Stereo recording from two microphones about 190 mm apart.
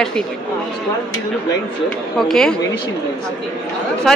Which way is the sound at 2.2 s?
Centre (ahead or behind).